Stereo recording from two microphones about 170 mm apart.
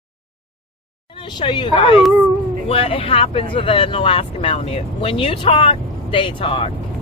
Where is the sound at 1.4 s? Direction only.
30° left (ahead or behind).